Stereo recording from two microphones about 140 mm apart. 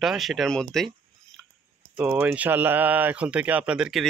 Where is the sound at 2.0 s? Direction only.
15° right (ahead or behind).